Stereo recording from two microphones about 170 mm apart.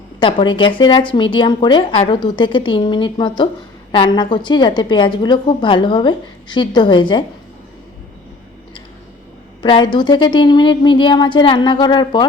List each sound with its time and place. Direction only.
0.2 s speech: 30° left (ahead or behind)
9.6 s speech: 25° left (ahead or behind)